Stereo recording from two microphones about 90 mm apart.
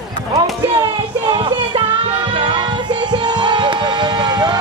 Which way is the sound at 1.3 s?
65° right (ahead or behind).